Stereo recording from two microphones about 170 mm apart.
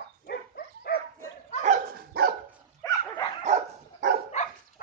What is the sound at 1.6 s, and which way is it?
Dog, 55° right (ahead or behind).